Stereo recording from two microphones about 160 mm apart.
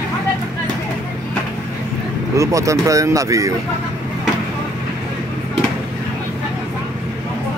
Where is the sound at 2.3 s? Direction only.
20° right (ahead or behind).